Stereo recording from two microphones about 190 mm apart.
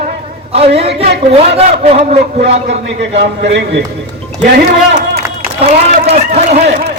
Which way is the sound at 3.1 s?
70° right (ahead or behind).